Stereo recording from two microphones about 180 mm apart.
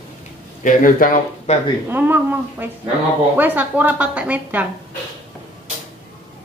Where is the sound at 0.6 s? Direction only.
50° left (ahead or behind).